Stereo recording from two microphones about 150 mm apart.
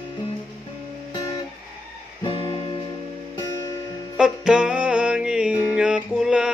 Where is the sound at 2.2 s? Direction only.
35° left (ahead or behind).